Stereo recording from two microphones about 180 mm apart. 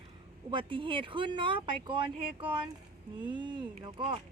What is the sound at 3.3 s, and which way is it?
Speech, 25° right (ahead or behind).